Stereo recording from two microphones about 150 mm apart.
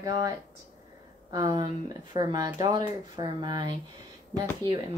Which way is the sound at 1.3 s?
25° right (ahead or behind).